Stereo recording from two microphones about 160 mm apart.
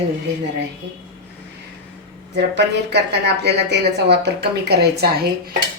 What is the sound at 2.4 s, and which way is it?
Speech, 90° right.